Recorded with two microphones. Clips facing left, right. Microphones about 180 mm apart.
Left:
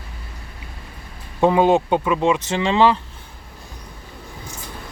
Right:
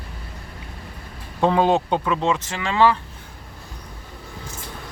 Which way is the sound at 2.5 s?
25° left (ahead or behind).